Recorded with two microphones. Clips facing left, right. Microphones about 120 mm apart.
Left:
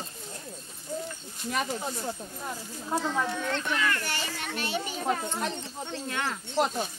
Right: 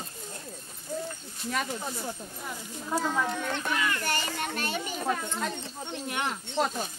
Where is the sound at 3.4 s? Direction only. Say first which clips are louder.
Left 1 dB; 15° right (ahead or behind).